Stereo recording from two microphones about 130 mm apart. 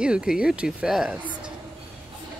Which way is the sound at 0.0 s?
5° right (ahead or behind).